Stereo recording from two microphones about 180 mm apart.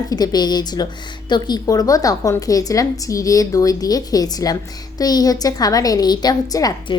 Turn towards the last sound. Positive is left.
turn(degrees=20)  # may be behind; listen again after turning